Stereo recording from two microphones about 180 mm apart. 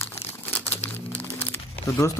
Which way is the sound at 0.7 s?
35° left (ahead or behind).